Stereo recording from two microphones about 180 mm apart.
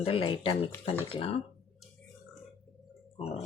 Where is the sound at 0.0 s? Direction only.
30° left (ahead or behind).